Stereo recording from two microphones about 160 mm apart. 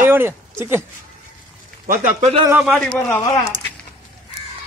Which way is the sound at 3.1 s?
25° left (ahead or behind).